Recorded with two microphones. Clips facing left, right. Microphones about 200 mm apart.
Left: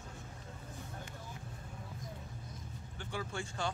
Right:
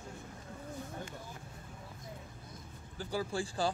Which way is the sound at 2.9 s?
35° right (ahead or behind).